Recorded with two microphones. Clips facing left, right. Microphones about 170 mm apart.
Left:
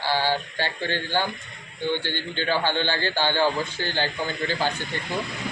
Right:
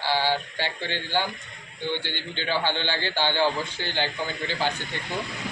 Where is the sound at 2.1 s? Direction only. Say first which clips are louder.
Left 3 dB; 45° left (ahead or behind).